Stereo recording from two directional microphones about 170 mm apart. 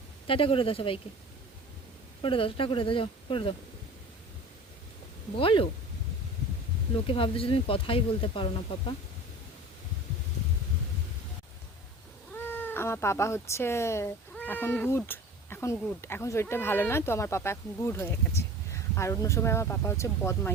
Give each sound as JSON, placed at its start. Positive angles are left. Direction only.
{"t": 0.3, "sound": "speech", "side_deg": 30}
{"t": 2.2, "sound": "speech", "side_deg": 30}
{"t": 5.4, "sound": "speech", "side_deg": 30}
{"t": 6.9, "sound": "speech", "side_deg": 35}
{"t": 12.5, "sound": "speech", "side_deg": 10}